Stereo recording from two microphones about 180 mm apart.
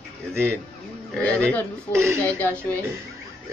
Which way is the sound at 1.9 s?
15° right (ahead or behind).